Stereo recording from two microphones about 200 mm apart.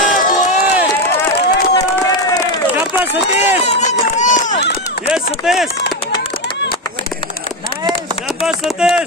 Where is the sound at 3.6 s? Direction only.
35° left (ahead or behind).